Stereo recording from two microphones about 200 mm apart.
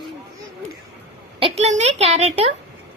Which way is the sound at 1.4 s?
35° right (ahead or behind).